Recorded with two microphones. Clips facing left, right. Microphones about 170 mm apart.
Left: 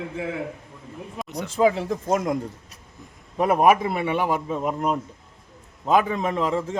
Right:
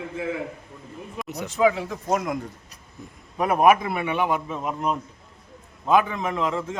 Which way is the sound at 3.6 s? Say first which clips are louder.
Right 2 dB; 30° left (ahead or behind).